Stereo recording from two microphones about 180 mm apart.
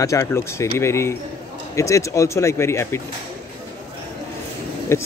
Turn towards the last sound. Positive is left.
turn(degrees=15)  # may be behind; listen again after turning